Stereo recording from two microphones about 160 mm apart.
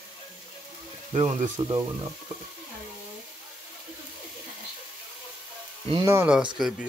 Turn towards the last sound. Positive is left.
turn(degrees=0)  # may be behind; listen again after turning